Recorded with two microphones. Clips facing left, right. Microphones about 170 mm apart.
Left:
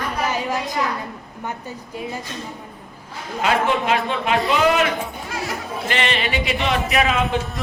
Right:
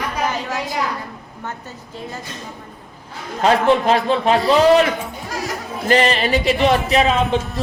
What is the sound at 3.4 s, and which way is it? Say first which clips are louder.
A man's voice: right 5 dB; 35° right (ahead or behind).